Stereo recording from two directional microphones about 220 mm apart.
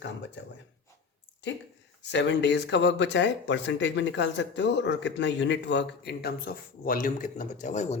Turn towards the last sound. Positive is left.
turn(degrees=30)  # may be behind; listen again after turning